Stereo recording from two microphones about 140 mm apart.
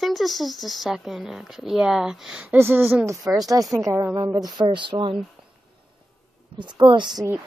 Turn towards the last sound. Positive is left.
turn(degrees=-35)  # may be behind; listen again after turning